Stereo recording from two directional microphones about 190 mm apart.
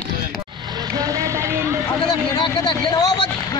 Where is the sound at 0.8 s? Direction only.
20° right (ahead or behind).